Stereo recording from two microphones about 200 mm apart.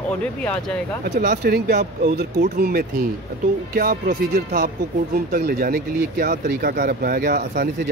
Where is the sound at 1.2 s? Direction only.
55° right (ahead or behind).